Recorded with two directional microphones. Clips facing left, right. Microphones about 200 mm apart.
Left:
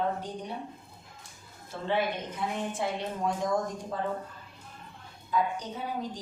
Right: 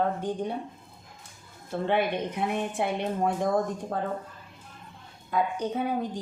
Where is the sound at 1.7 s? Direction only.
60° right (ahead or behind).